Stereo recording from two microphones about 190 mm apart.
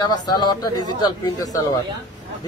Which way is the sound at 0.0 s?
20° left (ahead or behind).